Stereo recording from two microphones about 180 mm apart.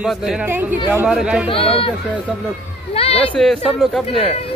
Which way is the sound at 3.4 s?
Centre (ahead or behind).